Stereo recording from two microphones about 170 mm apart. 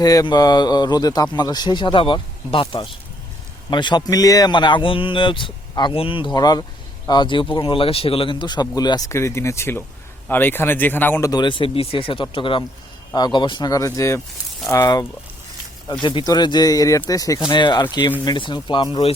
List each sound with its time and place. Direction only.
0.0 s speech: 20° left (ahead or behind)
16.0 s speech: 25° left (ahead or behind)